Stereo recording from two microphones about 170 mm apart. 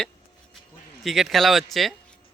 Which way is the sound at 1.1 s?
Centre (ahead or behind).